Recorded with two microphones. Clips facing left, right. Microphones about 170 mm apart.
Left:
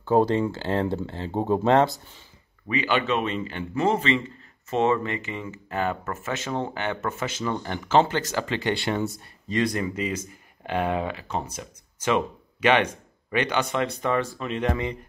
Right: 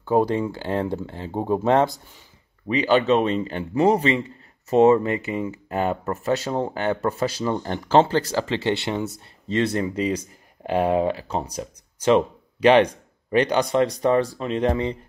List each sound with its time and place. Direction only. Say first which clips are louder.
0.0 s speech: even; 15° right (ahead or behind)
2.7 s speech: right 6 dB; 35° right (ahead or behind)